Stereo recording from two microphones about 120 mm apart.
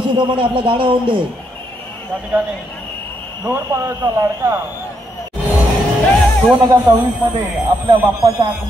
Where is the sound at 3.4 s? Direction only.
30° right (ahead or behind).